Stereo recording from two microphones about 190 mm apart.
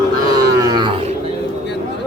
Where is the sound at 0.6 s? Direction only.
20° right (ahead or behind).